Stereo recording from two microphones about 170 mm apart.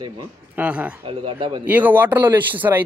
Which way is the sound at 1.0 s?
30° right (ahead or behind).